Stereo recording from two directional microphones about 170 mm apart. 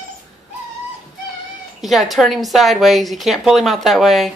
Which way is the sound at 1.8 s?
Centre (ahead or behind).